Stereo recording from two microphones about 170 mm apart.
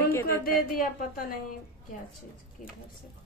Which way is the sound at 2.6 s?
50° left (ahead or behind).